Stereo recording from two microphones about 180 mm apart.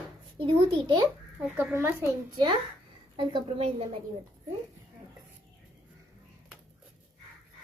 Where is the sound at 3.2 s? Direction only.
30° right (ahead or behind).